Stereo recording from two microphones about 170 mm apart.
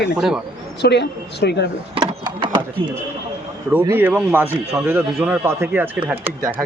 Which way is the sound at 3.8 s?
15° right (ahead or behind).